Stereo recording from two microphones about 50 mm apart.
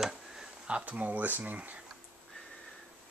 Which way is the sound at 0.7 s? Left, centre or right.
Right.